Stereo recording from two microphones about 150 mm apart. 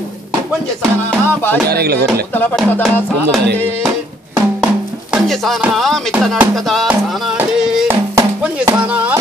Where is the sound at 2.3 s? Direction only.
10° left (ahead or behind).